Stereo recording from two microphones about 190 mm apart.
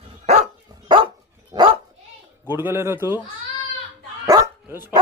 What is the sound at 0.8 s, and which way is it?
Dog, 25° right (ahead or behind).